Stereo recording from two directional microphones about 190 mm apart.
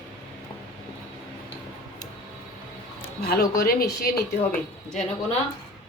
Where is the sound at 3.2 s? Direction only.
55° left (ahead or behind).